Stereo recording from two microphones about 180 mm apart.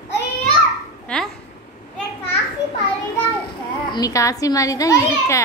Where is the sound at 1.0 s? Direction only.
5° left (ahead or behind).